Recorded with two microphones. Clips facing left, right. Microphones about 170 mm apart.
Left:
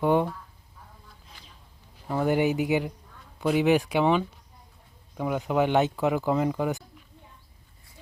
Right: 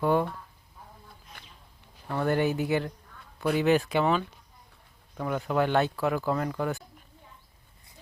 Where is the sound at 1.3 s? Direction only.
60° right (ahead or behind).